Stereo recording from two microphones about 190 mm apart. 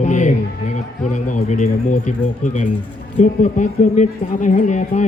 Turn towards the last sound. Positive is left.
turn(degrees=40)  # may be behind; listen again after turning